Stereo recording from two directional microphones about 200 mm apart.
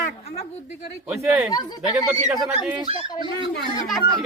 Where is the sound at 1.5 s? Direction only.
20° left (ahead or behind).